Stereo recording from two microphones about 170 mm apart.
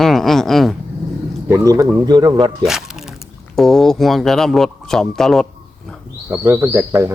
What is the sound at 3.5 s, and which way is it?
Speech, centre (ahead or behind).